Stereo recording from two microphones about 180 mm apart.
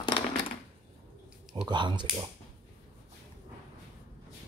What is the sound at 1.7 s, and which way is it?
Speech, 25° right (ahead or behind).